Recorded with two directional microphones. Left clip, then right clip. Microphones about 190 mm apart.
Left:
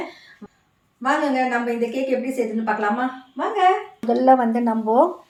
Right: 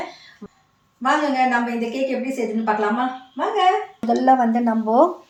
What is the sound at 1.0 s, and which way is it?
Speech, centre (ahead or behind).